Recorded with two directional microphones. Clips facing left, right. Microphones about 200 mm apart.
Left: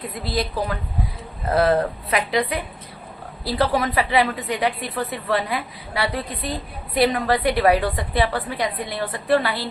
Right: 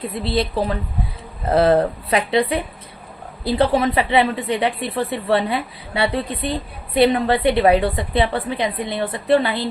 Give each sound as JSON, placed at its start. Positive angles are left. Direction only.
{"t": 0.1, "sound": "a woman's voice", "side_deg": -25}